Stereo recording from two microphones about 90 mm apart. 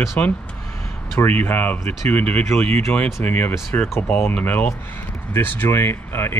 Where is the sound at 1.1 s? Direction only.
20° left (ahead or behind).